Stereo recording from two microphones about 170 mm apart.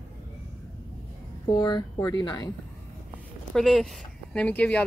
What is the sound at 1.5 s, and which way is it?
Speech, 20° left (ahead or behind).